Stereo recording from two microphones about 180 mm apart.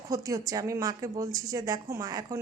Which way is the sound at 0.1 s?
20° right (ahead or behind).